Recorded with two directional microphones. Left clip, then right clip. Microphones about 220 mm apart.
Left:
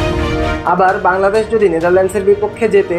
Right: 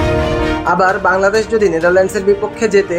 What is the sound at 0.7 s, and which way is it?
Speech, 15° right (ahead or behind).